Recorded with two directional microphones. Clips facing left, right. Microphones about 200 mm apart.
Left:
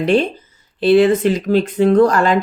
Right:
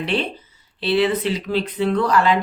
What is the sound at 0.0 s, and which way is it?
Speech, 45° left (ahead or behind).